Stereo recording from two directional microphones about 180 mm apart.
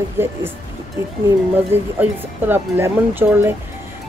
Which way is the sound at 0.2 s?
15° right (ahead or behind).